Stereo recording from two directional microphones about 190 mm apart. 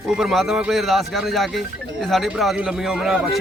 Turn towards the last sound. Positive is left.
turn(degrees=-5)  # may be behind; listen again after turning